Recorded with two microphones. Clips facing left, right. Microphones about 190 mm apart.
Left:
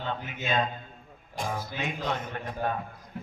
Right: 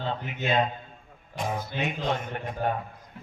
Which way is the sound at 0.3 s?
25° right (ahead or behind).